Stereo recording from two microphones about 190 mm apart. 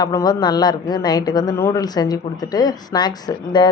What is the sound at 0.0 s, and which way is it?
Speech, 20° left (ahead or behind).